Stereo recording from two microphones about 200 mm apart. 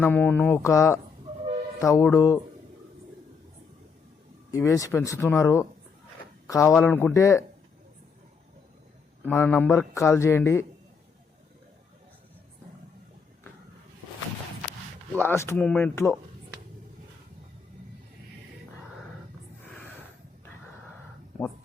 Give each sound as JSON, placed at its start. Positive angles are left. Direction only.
{"t": 0.0, "sound": "speech", "side_deg": 10}
{"t": 4.5, "sound": "speech", "side_deg": 15}
{"t": 9.2, "sound": "speech", "side_deg": 10}
{"t": 15.2, "sound": "speech", "side_deg": 10}